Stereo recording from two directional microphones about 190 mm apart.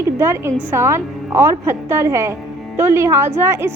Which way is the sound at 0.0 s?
15° right (ahead or behind).